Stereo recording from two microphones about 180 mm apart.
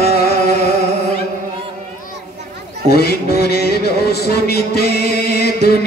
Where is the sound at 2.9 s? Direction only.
60° left (ahead or behind).